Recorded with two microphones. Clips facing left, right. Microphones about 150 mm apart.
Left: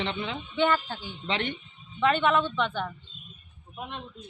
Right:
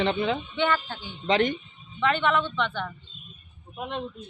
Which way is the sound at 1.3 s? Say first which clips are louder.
Right 8 dB; 40° right (ahead or behind).